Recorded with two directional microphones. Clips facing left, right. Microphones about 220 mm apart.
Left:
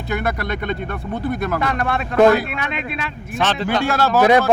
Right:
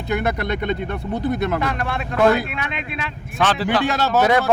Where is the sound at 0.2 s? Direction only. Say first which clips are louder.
Right 1 dB; 20° right (ahead or behind).